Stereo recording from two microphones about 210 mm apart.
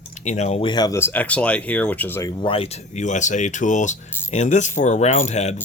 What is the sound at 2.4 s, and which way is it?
Speech, 25° left (ahead or behind).